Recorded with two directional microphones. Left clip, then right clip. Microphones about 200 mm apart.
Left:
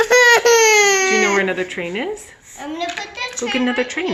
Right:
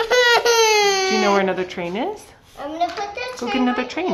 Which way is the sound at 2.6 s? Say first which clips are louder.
Right 2 dB; 15° right (ahead or behind).